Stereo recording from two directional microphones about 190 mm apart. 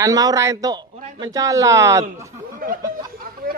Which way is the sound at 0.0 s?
20° right (ahead or behind).